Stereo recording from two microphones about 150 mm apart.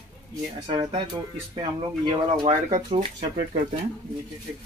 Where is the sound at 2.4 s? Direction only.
45° right (ahead or behind).